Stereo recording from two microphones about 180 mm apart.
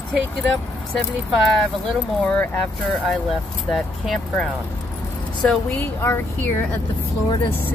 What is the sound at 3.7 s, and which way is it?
Speech, centre (ahead or behind).